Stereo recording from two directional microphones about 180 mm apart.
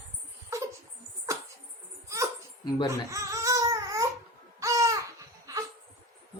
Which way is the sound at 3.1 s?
15° right (ahead or behind).